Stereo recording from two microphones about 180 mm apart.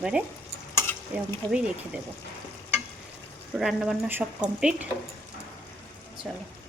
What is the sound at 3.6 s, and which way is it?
Speech, centre (ahead or behind).